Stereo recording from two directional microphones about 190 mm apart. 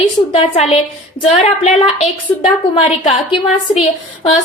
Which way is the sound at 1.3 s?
35° left (ahead or behind).